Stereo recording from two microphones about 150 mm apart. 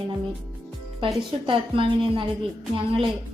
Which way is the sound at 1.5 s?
35° right (ahead or behind).